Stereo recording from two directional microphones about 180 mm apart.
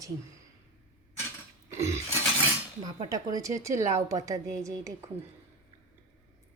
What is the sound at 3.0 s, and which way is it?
A woman's voice, 20° right (ahead or behind).